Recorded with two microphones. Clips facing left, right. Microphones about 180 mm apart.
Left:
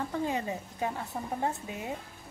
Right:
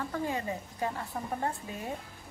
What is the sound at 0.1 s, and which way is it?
A woman's voice, 20° left (ahead or behind).